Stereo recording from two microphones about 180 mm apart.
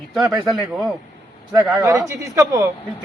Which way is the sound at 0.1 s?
Centre (ahead or behind).